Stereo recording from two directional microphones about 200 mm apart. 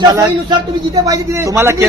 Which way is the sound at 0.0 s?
20° right (ahead or behind).